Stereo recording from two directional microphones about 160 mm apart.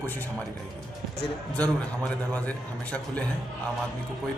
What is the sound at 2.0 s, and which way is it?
A man's voice, 10° left (ahead or behind).